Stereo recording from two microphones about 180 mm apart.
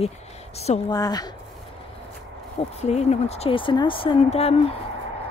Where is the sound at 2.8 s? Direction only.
35° left (ahead or behind).